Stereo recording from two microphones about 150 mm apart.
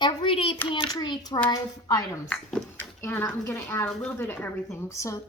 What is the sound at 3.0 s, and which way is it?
Speech, 15° left (ahead or behind).